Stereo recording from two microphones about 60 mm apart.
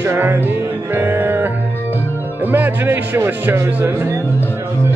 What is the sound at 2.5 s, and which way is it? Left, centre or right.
Speech, right.